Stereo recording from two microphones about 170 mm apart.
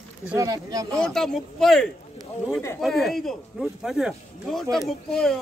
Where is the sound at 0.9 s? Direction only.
5° left (ahead or behind).